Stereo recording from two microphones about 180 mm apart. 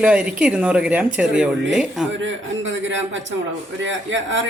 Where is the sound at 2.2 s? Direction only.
90° right.